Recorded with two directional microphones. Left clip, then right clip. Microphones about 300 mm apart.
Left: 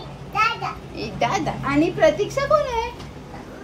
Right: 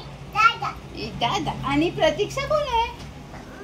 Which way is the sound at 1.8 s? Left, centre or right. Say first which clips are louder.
Left 4 dB; centre.